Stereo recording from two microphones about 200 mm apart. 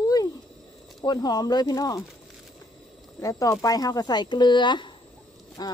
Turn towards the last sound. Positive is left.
turn(degrees=20)  # may be behind; listen again after turning